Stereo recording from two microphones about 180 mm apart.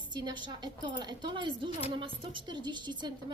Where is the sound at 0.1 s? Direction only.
25° right (ahead or behind).